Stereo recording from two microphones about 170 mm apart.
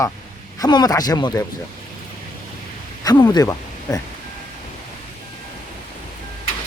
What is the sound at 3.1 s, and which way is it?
Speech, 20° left (ahead or behind).